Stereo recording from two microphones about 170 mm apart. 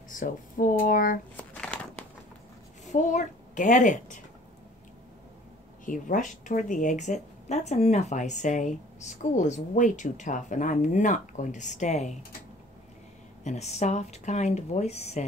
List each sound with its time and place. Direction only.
0.1 s speech: 50° left (ahead or behind)
1.3 s a sound: 10° left (ahead or behind)
2.8 s a woman's voice: 45° left (ahead or behind)
5.9 s speech: 50° left (ahead or behind)
13.4 s speech: 40° left (ahead or behind)